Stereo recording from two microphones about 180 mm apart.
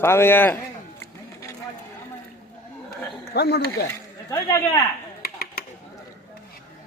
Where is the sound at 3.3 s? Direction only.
65° left (ahead or behind).